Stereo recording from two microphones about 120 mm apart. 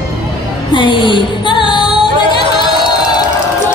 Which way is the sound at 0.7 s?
40° left (ahead or behind).